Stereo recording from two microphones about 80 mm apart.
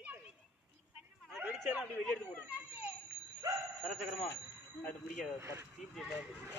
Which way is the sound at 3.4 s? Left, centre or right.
Right.